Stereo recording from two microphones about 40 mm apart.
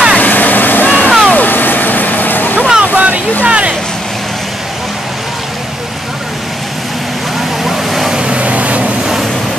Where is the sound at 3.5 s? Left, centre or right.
Right.